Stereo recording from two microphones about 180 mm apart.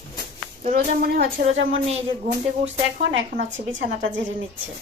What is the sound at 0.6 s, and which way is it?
Speech, 50° right (ahead or behind).